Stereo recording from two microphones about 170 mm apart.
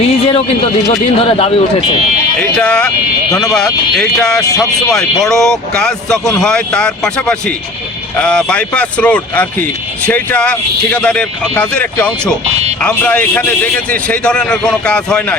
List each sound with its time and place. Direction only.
0.3 s a man's voice: 35° left (ahead or behind)
2.4 s speech: 5° left (ahead or behind)